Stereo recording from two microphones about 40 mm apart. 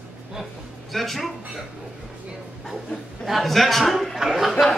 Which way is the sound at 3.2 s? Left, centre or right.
Centre.